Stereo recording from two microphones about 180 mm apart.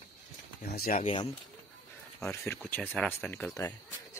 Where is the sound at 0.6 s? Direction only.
55° left (ahead or behind).